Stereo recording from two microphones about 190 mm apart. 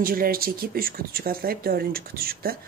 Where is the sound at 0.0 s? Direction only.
50° right (ahead or behind).